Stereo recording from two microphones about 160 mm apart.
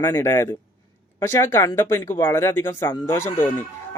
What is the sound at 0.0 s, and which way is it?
Speech, 15° left (ahead or behind).